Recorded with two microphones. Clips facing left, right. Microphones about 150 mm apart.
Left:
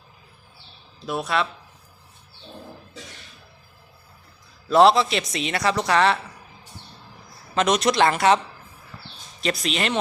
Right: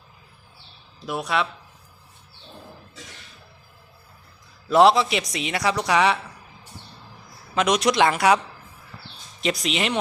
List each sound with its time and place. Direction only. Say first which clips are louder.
1.0 s a man's voice: even; 10° right (ahead or behind)
4.7 s a man's voice: even; 15° right (ahead or behind)
7.5 s a man's voice: even; 10° right (ahead or behind)
9.4 s a man's voice: even; 15° right (ahead or behind)